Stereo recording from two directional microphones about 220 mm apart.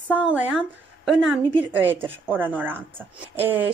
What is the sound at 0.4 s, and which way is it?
Speech, 5° right (ahead or behind).